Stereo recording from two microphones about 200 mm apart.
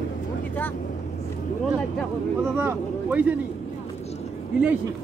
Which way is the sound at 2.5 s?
10° right (ahead or behind).